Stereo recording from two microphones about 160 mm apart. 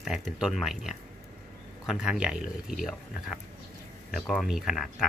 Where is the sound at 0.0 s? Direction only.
Centre (ahead or behind).